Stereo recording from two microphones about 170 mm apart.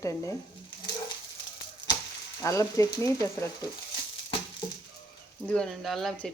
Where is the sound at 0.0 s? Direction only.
20° left (ahead or behind).